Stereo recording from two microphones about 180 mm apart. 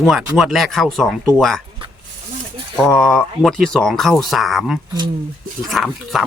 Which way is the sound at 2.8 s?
5° left (ahead or behind).